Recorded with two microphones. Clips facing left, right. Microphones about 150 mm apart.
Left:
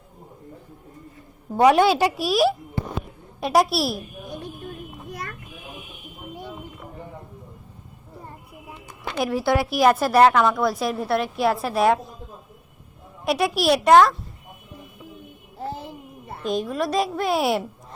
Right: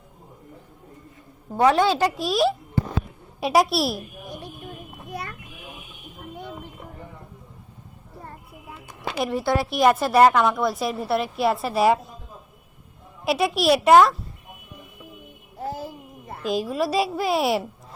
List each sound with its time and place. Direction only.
1.5 s a woman's voice: 15° left (ahead or behind)
9.0 s a woman's voice: 5° right (ahead or behind)
13.2 s a woman's voice: centre (ahead or behind)
15.6 s a sound: 25° left (ahead or behind)
16.5 s a woman's voice: 5° right (ahead or behind)